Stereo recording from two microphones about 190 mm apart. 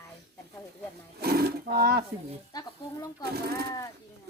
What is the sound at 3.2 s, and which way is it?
Speech, 55° right (ahead or behind).